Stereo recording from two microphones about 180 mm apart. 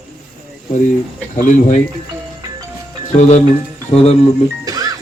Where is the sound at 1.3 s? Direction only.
45° left (ahead or behind).